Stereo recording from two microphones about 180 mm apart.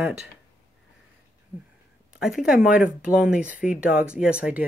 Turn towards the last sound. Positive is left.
turn(degrees=-5)  # may be behind; listen again after turning